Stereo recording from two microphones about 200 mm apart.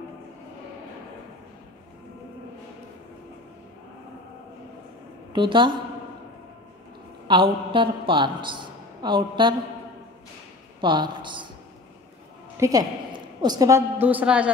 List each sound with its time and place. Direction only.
5.3 s a woman's voice: 25° right (ahead or behind)
7.2 s a woman's voice: 25° right (ahead or behind)
10.8 s speech: 25° right (ahead or behind)
12.5 s a woman's voice: 15° right (ahead or behind)